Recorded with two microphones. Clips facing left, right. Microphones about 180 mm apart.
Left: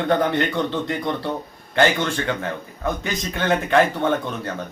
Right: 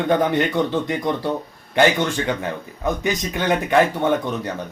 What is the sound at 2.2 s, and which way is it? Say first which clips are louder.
A man's voice: right 1 dB; 10° right (ahead or behind).